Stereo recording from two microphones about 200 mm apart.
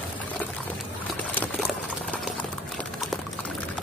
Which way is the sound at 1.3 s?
5° left (ahead or behind).